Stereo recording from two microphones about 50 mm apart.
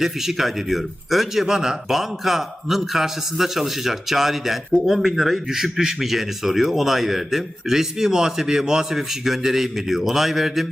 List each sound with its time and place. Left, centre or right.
0.0 s a man's voice: centre